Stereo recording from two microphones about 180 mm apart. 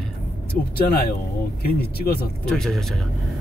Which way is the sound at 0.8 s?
55° left (ahead or behind).